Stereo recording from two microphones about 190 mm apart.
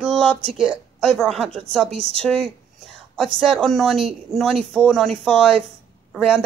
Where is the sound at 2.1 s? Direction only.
5° left (ahead or behind).